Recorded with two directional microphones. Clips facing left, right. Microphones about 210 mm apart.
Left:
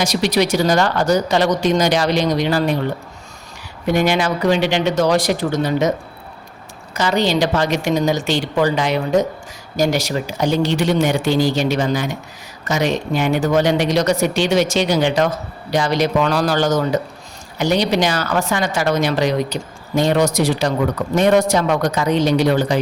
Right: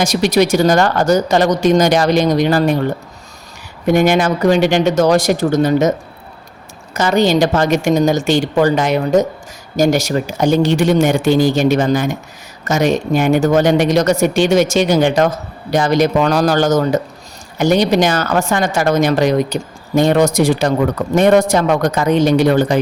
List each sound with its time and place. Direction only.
0.0 s speech: 45° right (ahead or behind)
3.8 s speech: 45° right (ahead or behind)
6.9 s speech: 45° right (ahead or behind)